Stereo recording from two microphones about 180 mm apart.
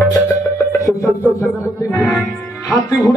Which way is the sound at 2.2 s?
Centre (ahead or behind).